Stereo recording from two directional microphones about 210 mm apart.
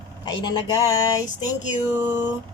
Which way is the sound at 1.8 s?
10° right (ahead or behind).